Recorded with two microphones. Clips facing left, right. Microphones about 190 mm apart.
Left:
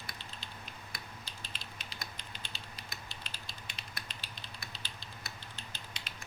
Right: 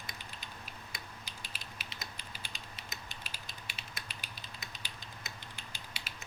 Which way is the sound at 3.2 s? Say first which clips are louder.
Even; 10° right (ahead or behind).